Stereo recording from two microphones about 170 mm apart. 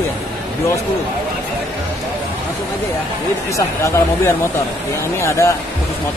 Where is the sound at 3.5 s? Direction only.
15° left (ahead or behind).